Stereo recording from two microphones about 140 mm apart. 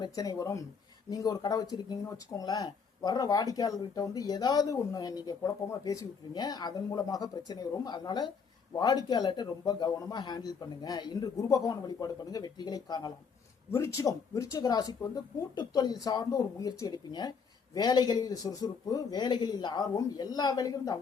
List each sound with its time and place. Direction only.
0.0 s speech: 25° left (ahead or behind)
13.7 s speech: 20° left (ahead or behind)